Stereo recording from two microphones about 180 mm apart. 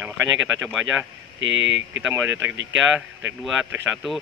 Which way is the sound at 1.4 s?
90° right.